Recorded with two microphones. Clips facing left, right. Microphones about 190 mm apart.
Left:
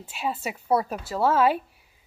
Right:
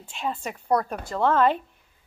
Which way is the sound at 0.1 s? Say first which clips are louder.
Left 1 dB; 5° left (ahead or behind).